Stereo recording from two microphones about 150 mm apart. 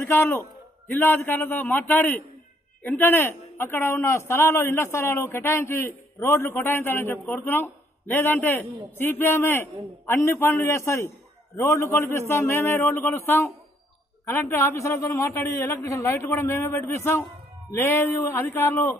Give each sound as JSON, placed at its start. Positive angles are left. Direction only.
{"t": 0.0, "sound": "a man's voice", "side_deg": 15}